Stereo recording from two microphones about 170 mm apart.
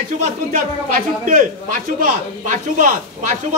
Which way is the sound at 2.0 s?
50° right (ahead or behind).